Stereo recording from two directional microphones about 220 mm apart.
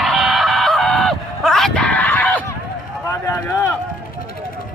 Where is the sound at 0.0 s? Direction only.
Centre (ahead or behind).